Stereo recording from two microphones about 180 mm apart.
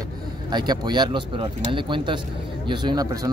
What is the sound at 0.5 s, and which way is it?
Speech, 25° right (ahead or behind).